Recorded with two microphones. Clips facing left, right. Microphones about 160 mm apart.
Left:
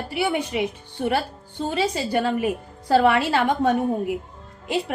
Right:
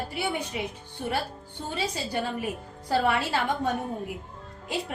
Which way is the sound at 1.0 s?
70° left (ahead or behind).